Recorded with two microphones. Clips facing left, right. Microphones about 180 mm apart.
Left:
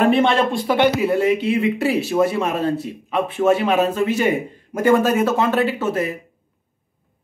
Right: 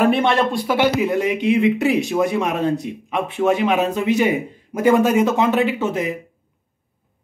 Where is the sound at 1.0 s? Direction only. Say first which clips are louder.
Left 1 dB; 15° right (ahead or behind).